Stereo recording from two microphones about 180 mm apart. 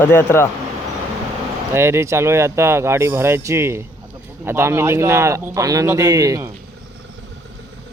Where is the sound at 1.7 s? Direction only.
15° right (ahead or behind).